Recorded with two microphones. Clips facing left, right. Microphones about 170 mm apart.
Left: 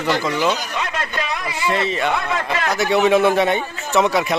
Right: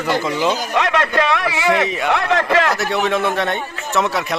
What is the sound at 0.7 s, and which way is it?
A man's voice, 80° right.